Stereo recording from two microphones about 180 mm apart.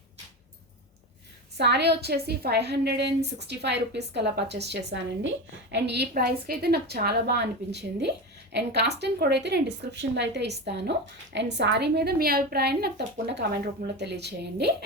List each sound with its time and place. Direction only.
1.5 s a woman's voice: 70° right (ahead or behind)